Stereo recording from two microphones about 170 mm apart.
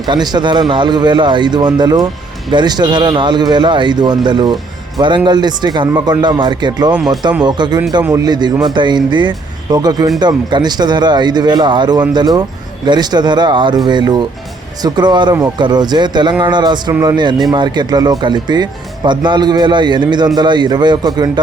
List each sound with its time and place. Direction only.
0.1 s speech: 25° right (ahead or behind)